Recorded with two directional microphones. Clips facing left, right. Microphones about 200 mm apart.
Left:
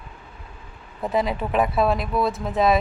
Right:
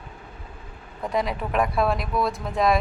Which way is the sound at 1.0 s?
5° left (ahead or behind).